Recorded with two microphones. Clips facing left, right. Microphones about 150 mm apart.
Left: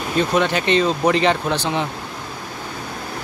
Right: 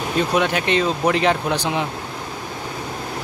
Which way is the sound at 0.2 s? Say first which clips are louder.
Left 1 dB; 5° right (ahead or behind).